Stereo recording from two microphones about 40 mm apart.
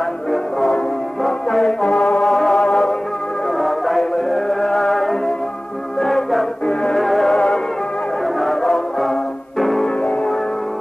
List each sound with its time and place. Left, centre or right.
0.3 s music: centre
3.5 s music: centre
6.6 s music: left
6.9 s music: centre